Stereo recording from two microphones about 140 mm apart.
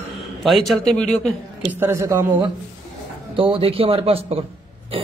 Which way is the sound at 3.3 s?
40° right (ahead or behind).